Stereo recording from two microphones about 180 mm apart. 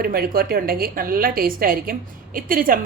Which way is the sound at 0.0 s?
55° right (ahead or behind).